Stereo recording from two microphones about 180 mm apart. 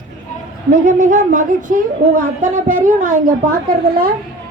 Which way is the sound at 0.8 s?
45° right (ahead or behind).